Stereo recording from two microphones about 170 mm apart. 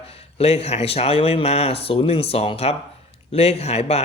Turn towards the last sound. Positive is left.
turn(degrees=35)  # may be behind; listen again after turning